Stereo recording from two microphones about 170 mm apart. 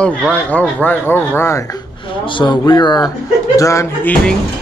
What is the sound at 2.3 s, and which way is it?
Speech, 30° left (ahead or behind).